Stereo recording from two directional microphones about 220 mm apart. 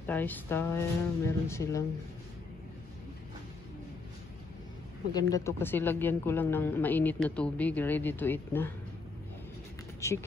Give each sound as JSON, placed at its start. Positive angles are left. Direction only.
{"t": 0.0, "sound": "speech", "side_deg": 10}
{"t": 5.3, "sound": "speech", "side_deg": 10}
{"t": 9.9, "sound": "speech", "side_deg": 15}